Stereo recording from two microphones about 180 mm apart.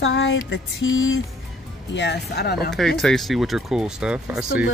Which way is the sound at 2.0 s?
70° left (ahead or behind).